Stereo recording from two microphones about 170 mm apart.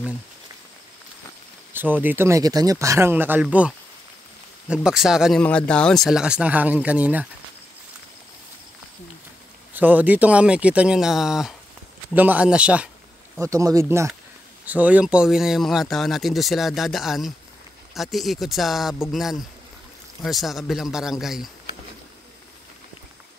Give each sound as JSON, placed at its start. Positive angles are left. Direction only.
{"t": 1.7, "sound": "speech", "side_deg": -10}
{"t": 4.8, "sound": "speech", "side_deg": -5}
{"t": 9.8, "sound": "speech", "side_deg": -10}
{"t": 13.4, "sound": "speech", "side_deg": -20}